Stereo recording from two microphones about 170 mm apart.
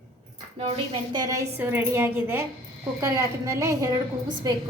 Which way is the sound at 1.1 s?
20° right (ahead or behind).